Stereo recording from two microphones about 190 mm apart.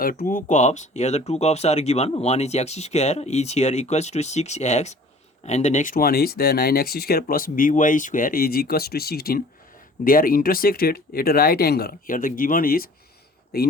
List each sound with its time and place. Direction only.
0.0 s speech: 50° left (ahead or behind)